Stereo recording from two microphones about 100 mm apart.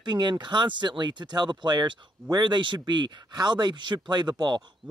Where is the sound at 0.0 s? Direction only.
50° right (ahead or behind).